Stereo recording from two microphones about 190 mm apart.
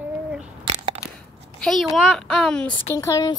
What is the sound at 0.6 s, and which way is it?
Crushing, 30° right (ahead or behind).